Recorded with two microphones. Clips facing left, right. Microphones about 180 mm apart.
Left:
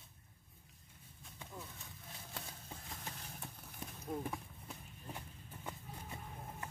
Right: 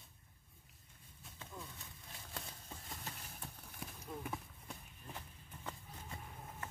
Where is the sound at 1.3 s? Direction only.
5° left (ahead or behind).